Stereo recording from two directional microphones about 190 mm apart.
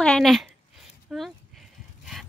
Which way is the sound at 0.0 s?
5° left (ahead or behind).